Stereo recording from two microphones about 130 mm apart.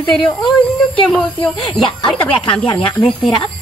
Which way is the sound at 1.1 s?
Centre (ahead or behind).